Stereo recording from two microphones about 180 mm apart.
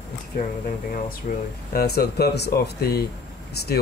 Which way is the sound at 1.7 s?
60° left (ahead or behind).